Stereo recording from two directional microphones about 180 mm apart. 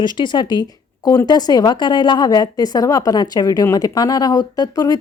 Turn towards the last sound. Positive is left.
turn(degrees=20)  # may be behind; listen again after turning